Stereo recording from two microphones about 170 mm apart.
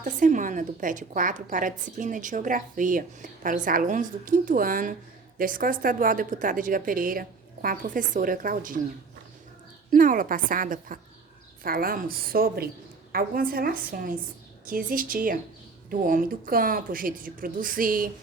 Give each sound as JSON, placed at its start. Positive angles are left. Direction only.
{"t": 0.0, "sound": "a woman's voice", "side_deg": -50}
{"t": 9.9, "sound": "a woman's voice", "side_deg": -50}